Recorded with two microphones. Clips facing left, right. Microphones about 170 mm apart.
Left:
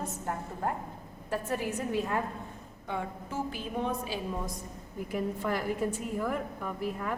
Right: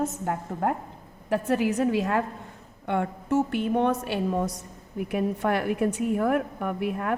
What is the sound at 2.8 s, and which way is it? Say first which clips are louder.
A woman's voice: right 9 dB; 65° right (ahead or behind).